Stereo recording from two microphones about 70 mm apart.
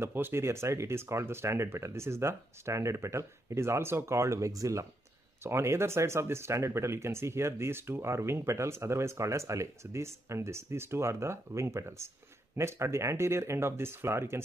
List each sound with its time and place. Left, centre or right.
0.0 s speech: right
5.4 s speech: right